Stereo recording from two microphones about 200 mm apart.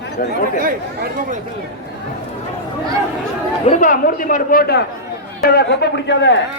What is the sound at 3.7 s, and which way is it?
A man's voice, 40° left (ahead or behind).